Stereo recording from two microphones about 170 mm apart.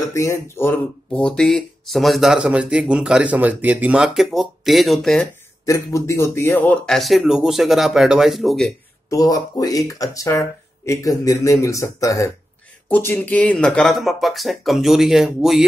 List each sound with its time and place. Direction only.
0.1 s speech: 15° left (ahead or behind); by 5.2 s centre (ahead or behind)
5.7 s speech: 15° left (ahead or behind); by 8.7 s centre (ahead or behind)
9.1 s speech: 20° left (ahead or behind); by 15.6 s centre (ahead or behind)